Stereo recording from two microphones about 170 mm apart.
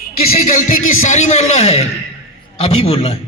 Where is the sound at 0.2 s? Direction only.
60° left (ahead or behind); by 3.2 s 35° left (ahead or behind).